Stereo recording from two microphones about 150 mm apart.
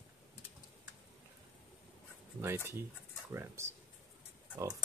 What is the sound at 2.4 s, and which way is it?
Speech, 15° right (ahead or behind).